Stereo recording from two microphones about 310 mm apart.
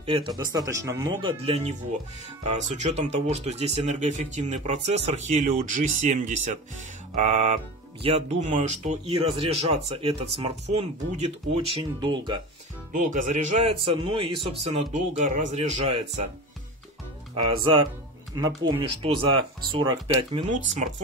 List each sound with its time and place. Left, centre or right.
0.0 s speech: centre
12.9 s speech: right
17.4 s speech: centre